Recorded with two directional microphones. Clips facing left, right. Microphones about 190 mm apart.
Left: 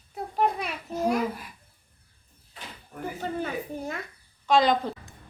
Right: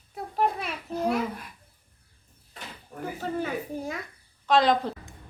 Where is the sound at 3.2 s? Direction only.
Centre (ahead or behind).